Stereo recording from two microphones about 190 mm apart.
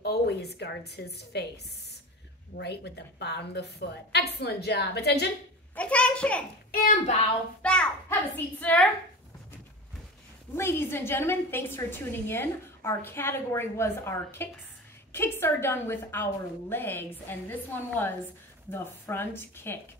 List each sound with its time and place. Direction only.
0.0 s a woman's voice: 60° left (ahead or behind)
2.5 s a woman's voice: 60° left (ahead or behind)
5.8 s a woman's voice: 5° left (ahead or behind)
6.7 s speech: 50° left (ahead or behind)
7.6 s a child's voice: 5° left (ahead or behind)
10.5 s a woman's voice: 15° left (ahead or behind)